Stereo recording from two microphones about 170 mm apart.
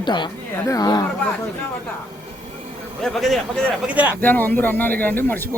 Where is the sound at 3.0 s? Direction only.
Centre (ahead or behind).